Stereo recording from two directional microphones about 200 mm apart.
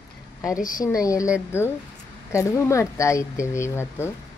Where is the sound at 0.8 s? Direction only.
15° left (ahead or behind).